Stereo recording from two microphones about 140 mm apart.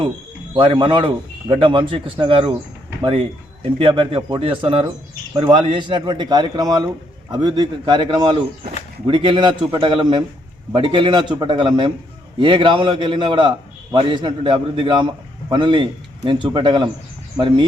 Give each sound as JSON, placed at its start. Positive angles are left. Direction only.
{"t": 0.5, "sound": "a man's voice", "side_deg": -35}